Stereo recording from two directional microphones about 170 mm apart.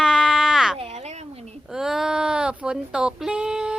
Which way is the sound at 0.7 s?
40° right (ahead or behind).